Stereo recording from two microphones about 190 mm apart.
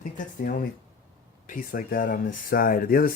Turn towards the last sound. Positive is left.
turn(degrees=50)  # may be behind; listen again after turning